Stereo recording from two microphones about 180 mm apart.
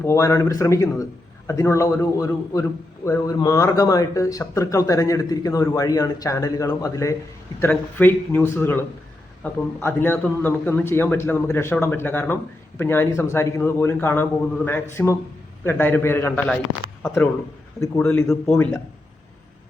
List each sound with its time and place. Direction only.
0.0 s a man's voice: 15° left (ahead or behind)
17.7 s a man's voice: 15° left (ahead or behind)